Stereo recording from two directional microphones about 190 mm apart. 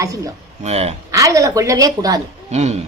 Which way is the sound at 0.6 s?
35° right (ahead or behind).